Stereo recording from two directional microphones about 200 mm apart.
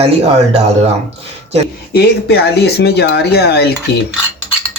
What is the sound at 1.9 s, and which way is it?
Speech, 55° left (ahead or behind).